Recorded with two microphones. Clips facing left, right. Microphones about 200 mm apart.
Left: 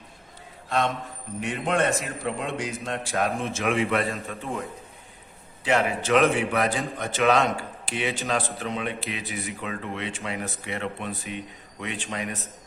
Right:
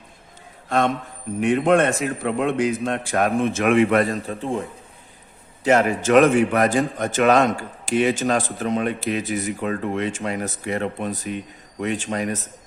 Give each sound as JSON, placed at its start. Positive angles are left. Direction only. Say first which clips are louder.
{"t": 1.4, "sound": "a man's voice", "louder": "right 8 dB", "side_deg": -55}
{"t": 4.1, "sound": "a man's voice", "louder": "right 7 dB", "side_deg": -30}
{"t": 5.6, "sound": "speech", "louder": "right 6 dB", "side_deg": -45}